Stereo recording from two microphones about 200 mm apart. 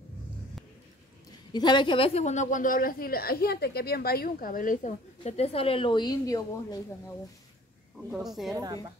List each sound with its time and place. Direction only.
1.5 s a woman's voice: 20° left (ahead or behind)
8.1 s speech: centre (ahead or behind)